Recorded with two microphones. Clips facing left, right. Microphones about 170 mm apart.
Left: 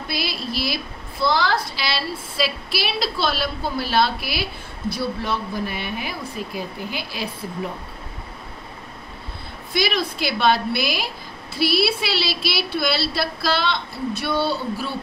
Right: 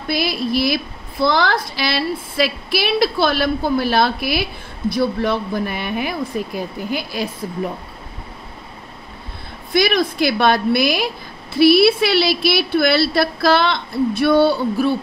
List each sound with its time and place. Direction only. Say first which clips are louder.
0.1 s a woman's voice: right 9 dB; 50° right (ahead or behind)
9.8 s a woman's voice: right 6 dB; 50° right (ahead or behind)